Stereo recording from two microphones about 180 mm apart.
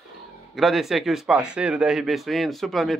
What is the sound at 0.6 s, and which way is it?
Speech, centre (ahead or behind).